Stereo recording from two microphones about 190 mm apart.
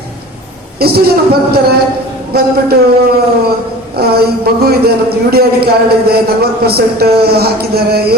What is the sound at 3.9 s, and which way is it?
Speech, 55° right (ahead or behind).